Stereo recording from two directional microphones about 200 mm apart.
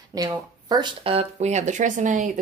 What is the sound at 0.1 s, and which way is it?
Speech, 20° right (ahead or behind).